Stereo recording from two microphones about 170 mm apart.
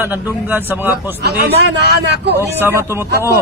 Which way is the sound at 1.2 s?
75° right (ahead or behind).